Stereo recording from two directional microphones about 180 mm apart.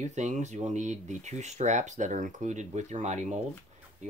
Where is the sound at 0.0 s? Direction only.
40° right (ahead or behind).